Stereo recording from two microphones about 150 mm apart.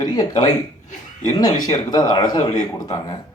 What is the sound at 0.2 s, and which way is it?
Speech, 25° left (ahead or behind).